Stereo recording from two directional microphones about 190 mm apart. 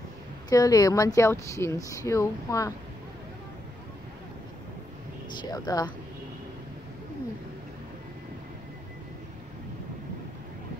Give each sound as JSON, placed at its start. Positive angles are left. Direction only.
{"t": 0.5, "sound": "speech", "side_deg": 20}
{"t": 5.5, "sound": "speech", "side_deg": 20}